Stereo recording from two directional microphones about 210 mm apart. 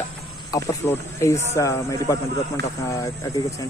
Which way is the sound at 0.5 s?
15° left (ahead or behind).